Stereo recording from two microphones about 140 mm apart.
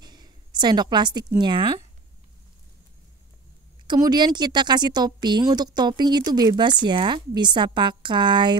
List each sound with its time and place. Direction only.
0.0 s a sound: 30° right (ahead or behind)
1.4 s a woman's voice: 30° right (ahead or behind)
3.8 s a woman's voice: 30° right (ahead or behind)